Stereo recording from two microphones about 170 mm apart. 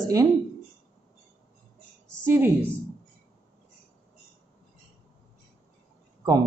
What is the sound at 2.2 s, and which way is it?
Speech, 15° right (ahead or behind).